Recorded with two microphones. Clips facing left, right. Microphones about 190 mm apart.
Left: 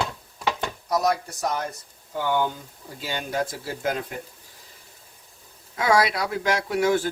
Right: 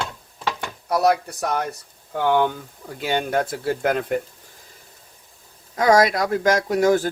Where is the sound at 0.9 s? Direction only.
60° right (ahead or behind).